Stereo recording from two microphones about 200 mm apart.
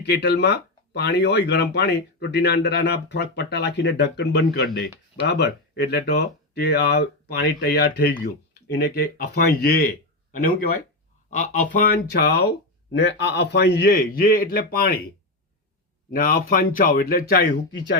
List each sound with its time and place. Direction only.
0.0 s a man's voice: 55° left (ahead or behind)
16.1 s a man's voice: 45° left (ahead or behind)